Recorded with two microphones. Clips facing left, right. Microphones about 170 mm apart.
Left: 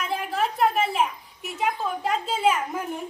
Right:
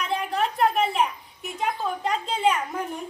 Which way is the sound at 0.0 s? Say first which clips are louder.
Right 1 dB; centre (ahead or behind).